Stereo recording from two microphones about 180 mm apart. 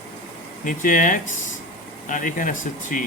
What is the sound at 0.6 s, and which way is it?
Speech, 45° left (ahead or behind).